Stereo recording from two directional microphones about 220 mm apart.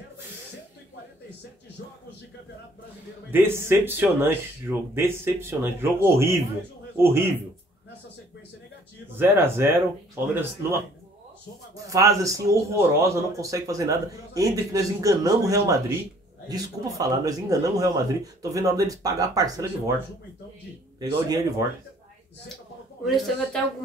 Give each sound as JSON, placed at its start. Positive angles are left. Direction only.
{"t": 3.3, "sound": "a man's voice", "side_deg": -10}
{"t": 9.1, "sound": "a man's voice", "side_deg": -10}
{"t": 21.0, "sound": "a man's voice", "side_deg": -15}
{"t": 23.0, "sound": "speech", "side_deg": 0}